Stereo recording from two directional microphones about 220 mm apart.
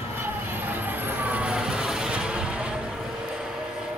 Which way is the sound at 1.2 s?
5° right (ahead or behind).